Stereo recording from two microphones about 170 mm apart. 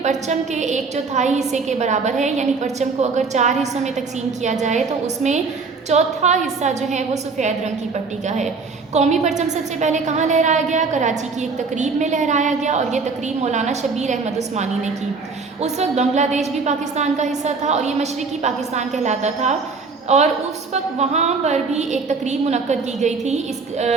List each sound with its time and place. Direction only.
0.0 s a woman's voice: 45° right (ahead or behind)
5.0 s a woman's voice: 45° right (ahead or behind)
8.9 s a woman's voice: 45° right (ahead or behind)